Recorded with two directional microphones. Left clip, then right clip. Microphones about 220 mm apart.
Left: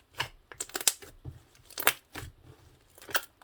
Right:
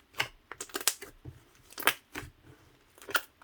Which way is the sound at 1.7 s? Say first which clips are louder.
Even; centre (ahead or behind).